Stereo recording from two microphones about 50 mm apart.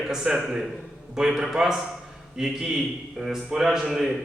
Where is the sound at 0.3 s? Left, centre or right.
Centre.